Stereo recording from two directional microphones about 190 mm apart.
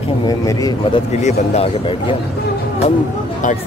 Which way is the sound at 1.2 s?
35° left (ahead or behind).